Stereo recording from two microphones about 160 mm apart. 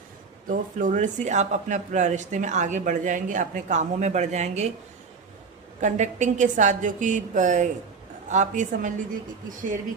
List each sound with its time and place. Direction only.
0.4 s speech: 55° right (ahead or behind)
5.8 s speech: 50° right (ahead or behind)